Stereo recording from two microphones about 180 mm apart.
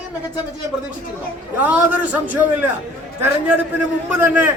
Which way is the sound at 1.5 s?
10° right (ahead or behind).